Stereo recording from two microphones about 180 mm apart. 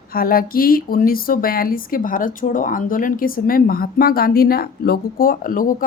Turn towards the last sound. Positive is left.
turn(degrees=50)  # may be behind; listen again after turning